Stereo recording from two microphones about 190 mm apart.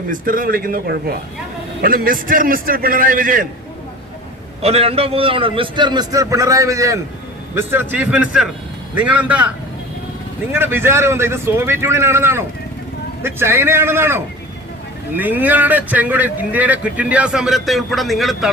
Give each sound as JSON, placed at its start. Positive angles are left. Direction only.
{"t": 0.1, "sound": "a man's voice", "side_deg": -45}
{"t": 4.6, "sound": "a man's voice", "side_deg": -30}
{"t": 10.5, "sound": "a man's voice", "side_deg": -10}